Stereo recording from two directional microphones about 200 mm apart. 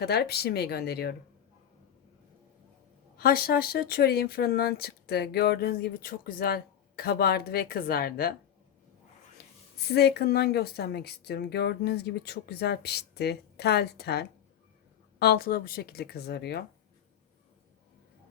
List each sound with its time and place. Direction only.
0.0 s speech: 55° left (ahead or behind)
3.2 s speech: 50° left (ahead or behind)
9.8 s speech: 55° left (ahead or behind)